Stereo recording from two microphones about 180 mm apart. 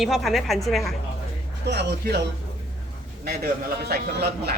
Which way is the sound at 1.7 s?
65° right (ahead or behind).